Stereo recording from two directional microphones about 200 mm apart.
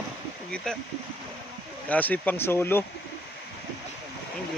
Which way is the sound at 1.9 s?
10° left (ahead or behind).